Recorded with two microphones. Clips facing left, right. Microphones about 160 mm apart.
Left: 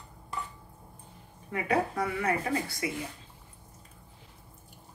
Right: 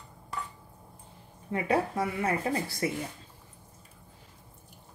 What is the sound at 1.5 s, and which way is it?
Speech, 25° right (ahead or behind).